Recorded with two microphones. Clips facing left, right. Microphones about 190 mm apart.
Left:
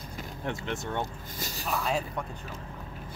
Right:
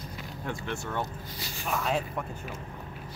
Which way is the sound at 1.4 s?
40° left (ahead or behind).